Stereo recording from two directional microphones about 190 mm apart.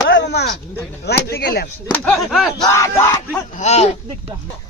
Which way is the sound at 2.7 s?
15° left (ahead or behind).